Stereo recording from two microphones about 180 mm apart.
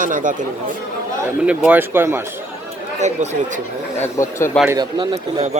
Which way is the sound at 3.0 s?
40° right (ahead or behind).